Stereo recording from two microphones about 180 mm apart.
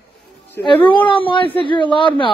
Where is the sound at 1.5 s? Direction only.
25° left (ahead or behind).